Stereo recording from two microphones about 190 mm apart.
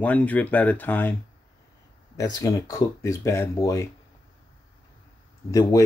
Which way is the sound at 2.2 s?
20° left (ahead or behind).